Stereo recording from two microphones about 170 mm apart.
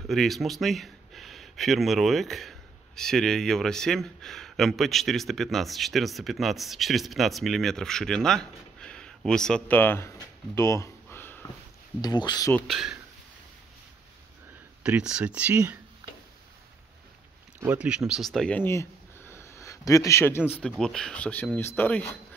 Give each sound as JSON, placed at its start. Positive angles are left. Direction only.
{"t": 0.1, "sound": "speech", "side_deg": 0}
{"t": 12.0, "sound": "speech", "side_deg": 25}
{"t": 12.5, "sound": "speech", "side_deg": 0}
{"t": 14.8, "sound": "speech", "side_deg": -5}
{"t": 17.6, "sound": "speech", "side_deg": -10}